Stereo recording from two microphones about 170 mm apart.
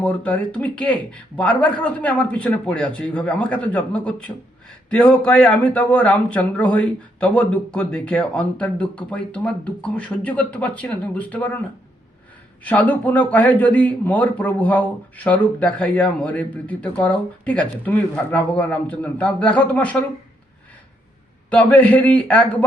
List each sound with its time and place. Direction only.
0.0 s a man's voice: 5° left (ahead or behind)
12.6 s a man's voice: 10° left (ahead or behind)
21.5 s a man's voice: 10° left (ahead or behind)